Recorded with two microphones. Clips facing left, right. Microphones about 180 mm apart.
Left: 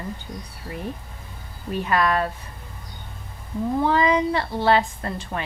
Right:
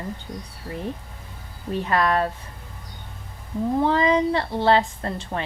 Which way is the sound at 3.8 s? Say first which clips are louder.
Even; 30° right (ahead or behind).